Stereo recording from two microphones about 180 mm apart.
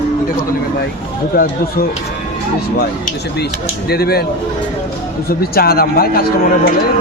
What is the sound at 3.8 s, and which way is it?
Speech, 60° left (ahead or behind).